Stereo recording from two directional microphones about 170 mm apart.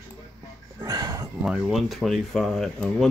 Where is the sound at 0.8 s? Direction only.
20° right (ahead or behind).